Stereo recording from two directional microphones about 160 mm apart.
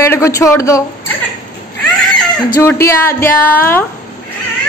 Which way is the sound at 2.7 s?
15° left (ahead or behind).